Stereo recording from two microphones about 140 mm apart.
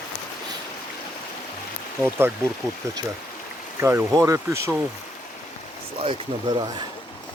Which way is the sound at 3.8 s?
20° right (ahead or behind).